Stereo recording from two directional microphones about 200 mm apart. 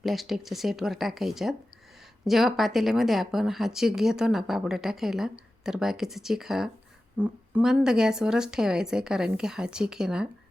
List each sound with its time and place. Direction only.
0.0 s speech: centre (ahead or behind)